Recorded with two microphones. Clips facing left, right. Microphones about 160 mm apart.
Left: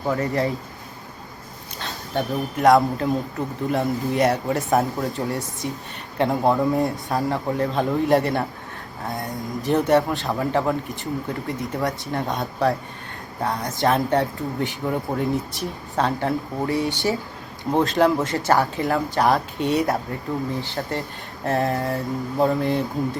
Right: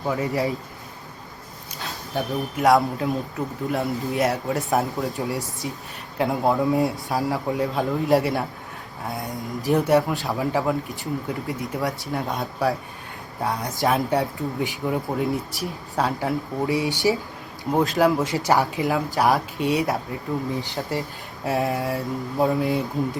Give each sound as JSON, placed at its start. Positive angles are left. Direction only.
{"t": 0.0, "sound": "speech", "side_deg": 0}
{"t": 1.8, "sound": "speech", "side_deg": 0}
{"t": 9.6, "sound": "speech", "side_deg": -5}
{"t": 16.6, "sound": "speech", "side_deg": 45}
{"t": 17.7, "sound": "speech", "side_deg": 0}